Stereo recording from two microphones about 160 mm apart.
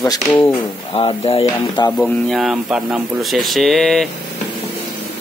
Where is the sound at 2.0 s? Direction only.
Centre (ahead or behind).